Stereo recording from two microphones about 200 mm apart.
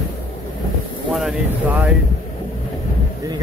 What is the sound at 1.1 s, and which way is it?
Speech, centre (ahead or behind).